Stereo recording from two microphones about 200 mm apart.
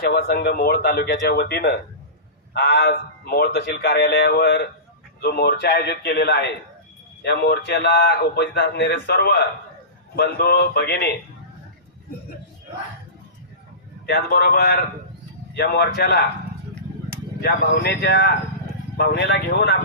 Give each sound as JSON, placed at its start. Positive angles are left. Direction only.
{"t": 0.0, "sound": "speech", "side_deg": 50}
{"t": 14.1, "sound": "speech", "side_deg": 55}
{"t": 17.4, "sound": "speech", "side_deg": 55}